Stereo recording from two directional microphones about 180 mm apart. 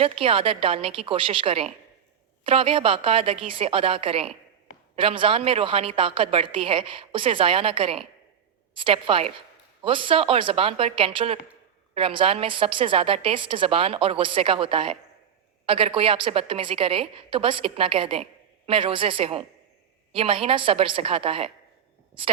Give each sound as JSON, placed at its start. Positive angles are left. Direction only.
{"t": 0.0, "sound": "a woman's voice", "side_deg": -30}